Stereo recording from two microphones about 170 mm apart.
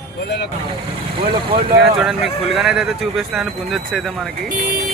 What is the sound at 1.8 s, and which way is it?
Speech, centre (ahead or behind).